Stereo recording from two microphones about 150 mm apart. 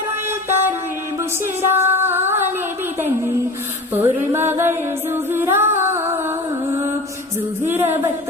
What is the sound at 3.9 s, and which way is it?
Music, 15° right (ahead or behind).